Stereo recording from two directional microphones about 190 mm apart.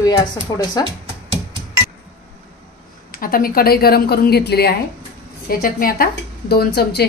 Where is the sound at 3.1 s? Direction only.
50° left (ahead or behind).